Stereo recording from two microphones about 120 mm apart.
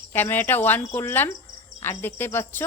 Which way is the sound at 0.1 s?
15° left (ahead or behind).